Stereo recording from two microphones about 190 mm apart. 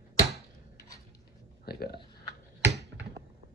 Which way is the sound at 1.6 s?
55° left (ahead or behind).